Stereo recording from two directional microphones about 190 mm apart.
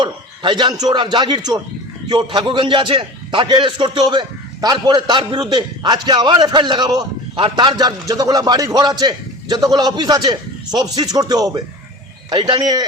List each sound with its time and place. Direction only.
0.0 s a man's voice: 25° right (ahead or behind)